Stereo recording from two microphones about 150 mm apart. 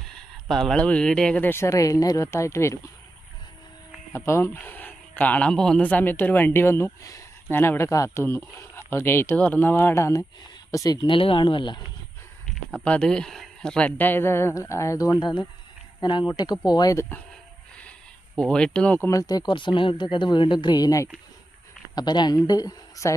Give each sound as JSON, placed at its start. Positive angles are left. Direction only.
{"t": 0.1, "sound": "speech", "side_deg": 5}
{"t": 4.3, "sound": "speech", "side_deg": 15}
{"t": 12.7, "sound": "speech", "side_deg": 5}
{"t": 18.3, "sound": "speech", "side_deg": 5}
{"t": 19.0, "sound": "speech", "side_deg": 25}